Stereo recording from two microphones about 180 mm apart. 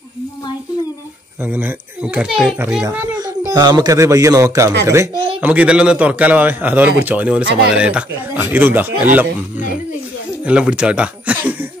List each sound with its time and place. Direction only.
1.4 s a man's voice: 10° right (ahead or behind)
3.2 s a man's voice: 20° right (ahead or behind)
10.4 s speech: 5° right (ahead or behind)